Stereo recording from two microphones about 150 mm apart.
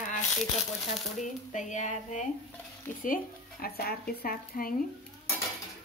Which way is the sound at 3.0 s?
80° left.